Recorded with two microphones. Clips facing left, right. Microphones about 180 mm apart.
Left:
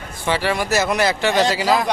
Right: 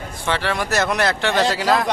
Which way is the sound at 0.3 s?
5° left (ahead or behind).